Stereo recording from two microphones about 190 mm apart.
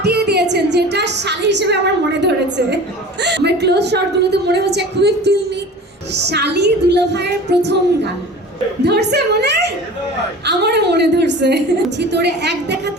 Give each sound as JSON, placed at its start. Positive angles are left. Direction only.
{"t": 0.0, "sound": "a sound", "side_deg": -60}
{"t": 3.2, "sound": "a woman's voice", "side_deg": -65}
{"t": 6.1, "sound": "music", "side_deg": -60}